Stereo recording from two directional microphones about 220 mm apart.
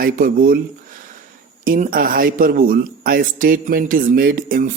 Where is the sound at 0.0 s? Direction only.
40° right (ahead or behind).